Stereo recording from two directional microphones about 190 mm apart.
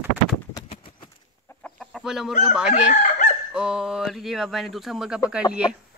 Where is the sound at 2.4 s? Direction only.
5° right (ahead or behind).